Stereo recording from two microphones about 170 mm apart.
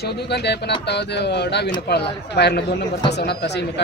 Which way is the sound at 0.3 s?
75° left (ahead or behind).